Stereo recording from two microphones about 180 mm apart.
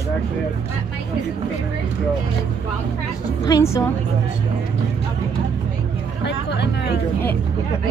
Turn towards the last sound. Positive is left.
turn(degrees=70)  # may be behind; listen again after turning